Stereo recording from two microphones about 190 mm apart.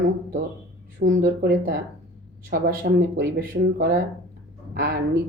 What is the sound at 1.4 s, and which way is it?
Speech, 60° right (ahead or behind).